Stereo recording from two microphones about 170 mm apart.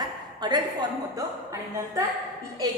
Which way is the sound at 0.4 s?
25° right (ahead or behind).